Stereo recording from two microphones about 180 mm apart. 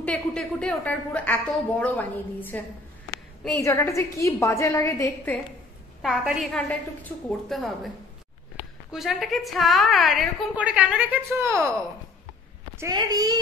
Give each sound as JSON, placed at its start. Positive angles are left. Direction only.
{"t": 0.0, "sound": "a woman's voice", "side_deg": 5}
{"t": 6.0, "sound": "a woman's voice", "side_deg": 0}
{"t": 8.9, "sound": "a woman's voice", "side_deg": 0}
{"t": 12.7, "sound": "a child's voice", "side_deg": -20}